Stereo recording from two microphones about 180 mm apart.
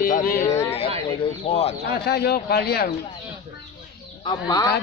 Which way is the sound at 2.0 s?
65° left (ahead or behind).